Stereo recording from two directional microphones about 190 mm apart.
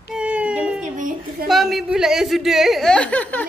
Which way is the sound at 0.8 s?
45° right (ahead or behind).